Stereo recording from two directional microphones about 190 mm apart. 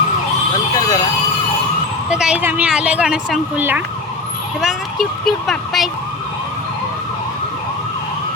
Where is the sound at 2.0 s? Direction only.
5° right (ahead or behind).